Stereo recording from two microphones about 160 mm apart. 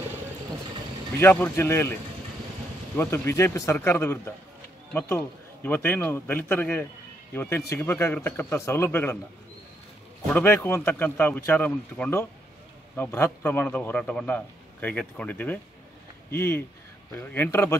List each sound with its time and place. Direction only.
1.2 s a man's voice: 15° left (ahead or behind)
3.0 s a man's voice: 15° left (ahead or behind)
10.3 s a man's voice: 15° left (ahead or behind)